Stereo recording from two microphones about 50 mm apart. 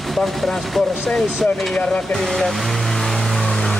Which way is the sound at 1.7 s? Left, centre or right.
Centre.